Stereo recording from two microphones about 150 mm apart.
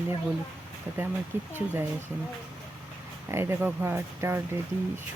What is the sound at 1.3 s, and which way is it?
Speech, 15° right (ahead or behind).